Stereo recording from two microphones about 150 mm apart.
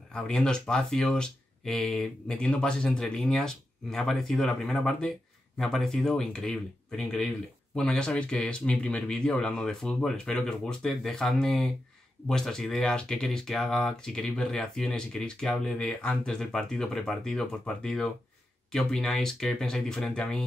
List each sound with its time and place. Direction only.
0.1 s speech: 5° left (ahead or behind)